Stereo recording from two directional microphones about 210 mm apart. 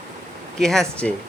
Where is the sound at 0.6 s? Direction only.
Centre (ahead or behind).